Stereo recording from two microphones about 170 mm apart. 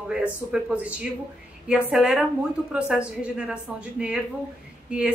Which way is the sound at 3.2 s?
5° right (ahead or behind).